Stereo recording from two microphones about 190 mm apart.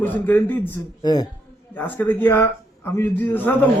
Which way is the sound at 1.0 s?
20° left (ahead or behind).